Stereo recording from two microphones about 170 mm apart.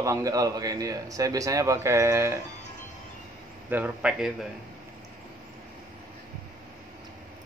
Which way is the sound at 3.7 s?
10° right (ahead or behind).